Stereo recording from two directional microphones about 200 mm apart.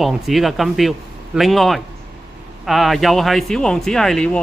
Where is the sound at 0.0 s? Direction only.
Centre (ahead or behind).